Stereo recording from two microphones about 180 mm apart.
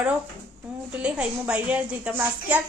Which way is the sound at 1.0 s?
5° right (ahead or behind).